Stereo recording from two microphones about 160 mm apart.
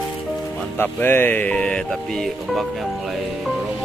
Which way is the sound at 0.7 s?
15° left (ahead or behind).